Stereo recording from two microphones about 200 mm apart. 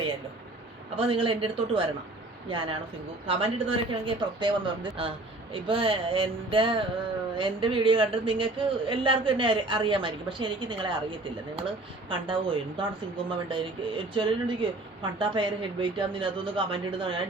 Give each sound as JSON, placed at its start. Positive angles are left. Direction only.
{"t": 0.9, "sound": "music", "side_deg": -25}